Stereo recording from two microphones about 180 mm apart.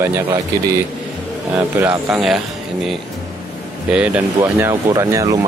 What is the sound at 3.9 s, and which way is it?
Speech, 5° right (ahead or behind).